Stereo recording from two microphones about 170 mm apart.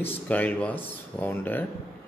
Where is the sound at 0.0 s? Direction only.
10° left (ahead or behind).